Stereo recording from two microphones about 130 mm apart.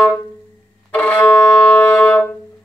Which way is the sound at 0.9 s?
10° left (ahead or behind).